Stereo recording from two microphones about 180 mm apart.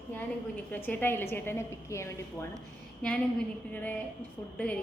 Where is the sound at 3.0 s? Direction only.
5° left (ahead or behind).